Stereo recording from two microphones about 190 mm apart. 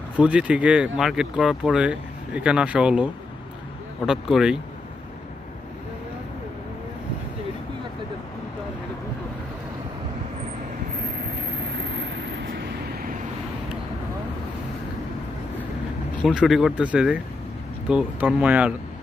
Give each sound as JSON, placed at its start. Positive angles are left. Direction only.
{"t": 0.2, "sound": "speech", "side_deg": -5}
{"t": 11.8, "sound": "vehicle", "side_deg": -70}
{"t": 16.3, "sound": "speech", "side_deg": 0}